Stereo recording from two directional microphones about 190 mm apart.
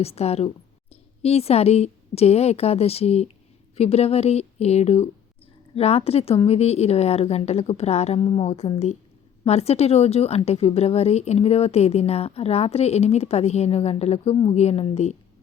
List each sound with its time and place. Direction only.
0.0 s a woman's voice: 35° left (ahead or behind)